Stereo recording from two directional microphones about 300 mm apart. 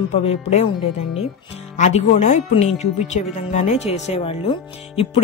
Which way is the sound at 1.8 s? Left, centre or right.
Left.